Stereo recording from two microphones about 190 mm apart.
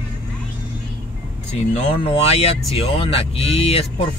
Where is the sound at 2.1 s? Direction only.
30° left (ahead or behind).